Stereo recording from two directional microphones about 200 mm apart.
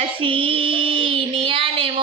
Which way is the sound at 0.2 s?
25° right (ahead or behind).